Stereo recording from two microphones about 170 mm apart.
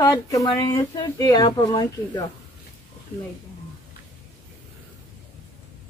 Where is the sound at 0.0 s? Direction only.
20° left (ahead or behind).